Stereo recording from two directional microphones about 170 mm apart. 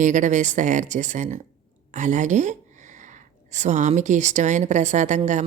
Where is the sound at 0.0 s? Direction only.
45° right (ahead or behind).